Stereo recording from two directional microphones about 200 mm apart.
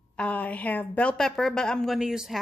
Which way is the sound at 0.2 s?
5° left (ahead or behind).